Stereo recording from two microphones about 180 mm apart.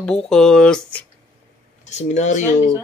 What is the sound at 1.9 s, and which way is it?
Speech, 40° left (ahead or behind).